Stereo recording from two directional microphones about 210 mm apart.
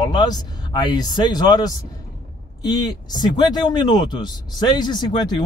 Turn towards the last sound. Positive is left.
turn(degrees=20)  # may be behind; listen again after turning